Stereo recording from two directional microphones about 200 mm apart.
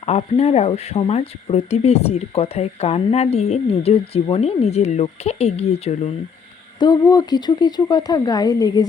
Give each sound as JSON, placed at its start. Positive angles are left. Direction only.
{"t": 0.0, "sound": "speech", "side_deg": 30}
{"t": 6.7, "sound": "speech", "side_deg": 20}